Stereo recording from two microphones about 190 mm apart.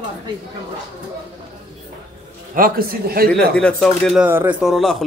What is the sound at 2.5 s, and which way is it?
Speech, 50° right (ahead or behind).